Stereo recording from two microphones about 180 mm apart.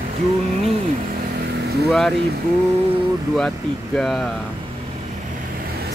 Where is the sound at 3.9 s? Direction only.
Centre (ahead or behind).